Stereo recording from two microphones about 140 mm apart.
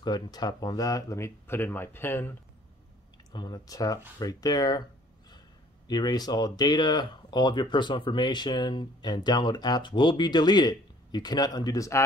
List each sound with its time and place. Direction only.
0.0 s speech: 30° left (ahead or behind)
3.3 s speech: 30° left (ahead or behind)
5.9 s speech: 30° left (ahead or behind)